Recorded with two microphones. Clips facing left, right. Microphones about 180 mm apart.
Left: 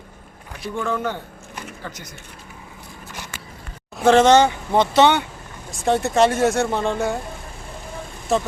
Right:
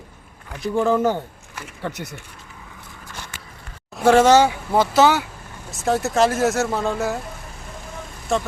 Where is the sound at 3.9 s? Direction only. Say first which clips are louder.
Even; 10° right (ahead or behind).